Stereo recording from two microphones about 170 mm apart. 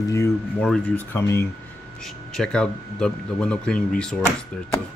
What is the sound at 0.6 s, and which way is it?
Speech, 5° left (ahead or behind).